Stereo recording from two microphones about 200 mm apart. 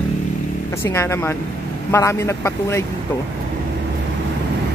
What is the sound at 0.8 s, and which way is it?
A man's voice, 15° left (ahead or behind).